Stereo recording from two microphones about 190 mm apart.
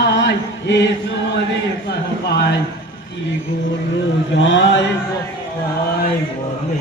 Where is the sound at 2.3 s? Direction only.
60° left (ahead or behind).